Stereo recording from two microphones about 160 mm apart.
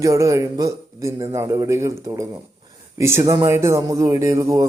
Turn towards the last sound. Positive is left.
turn(degrees=-20)  # may be behind; listen again after turning